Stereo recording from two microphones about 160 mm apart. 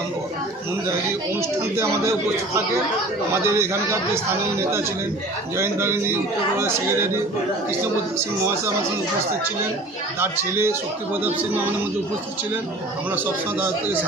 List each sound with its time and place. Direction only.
3.6 s speech: 15° right (ahead or behind)
5.5 s speech: 15° right (ahead or behind)
10.2 s speech: 15° right (ahead or behind)
13.1 s speech: 10° right (ahead or behind)